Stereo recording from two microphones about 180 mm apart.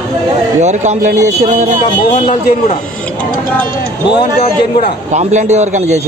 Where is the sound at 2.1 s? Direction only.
35° left (ahead or behind).